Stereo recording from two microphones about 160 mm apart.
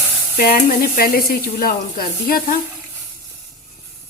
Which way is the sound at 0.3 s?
70° left (ahead or behind).